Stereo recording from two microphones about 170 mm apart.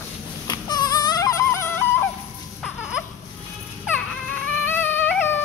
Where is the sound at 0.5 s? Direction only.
25° left (ahead or behind).